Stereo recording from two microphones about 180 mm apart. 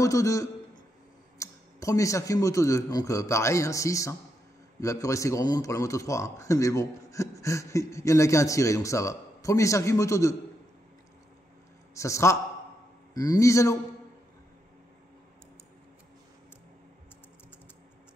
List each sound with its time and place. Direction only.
0.0 s speech: 15° left (ahead or behind)
11.9 s speech: 15° left (ahead or behind)